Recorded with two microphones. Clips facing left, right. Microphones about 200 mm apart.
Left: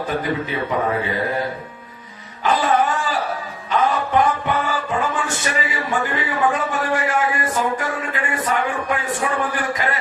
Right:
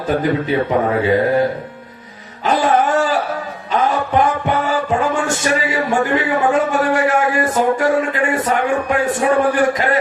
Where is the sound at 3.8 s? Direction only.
45° right (ahead or behind).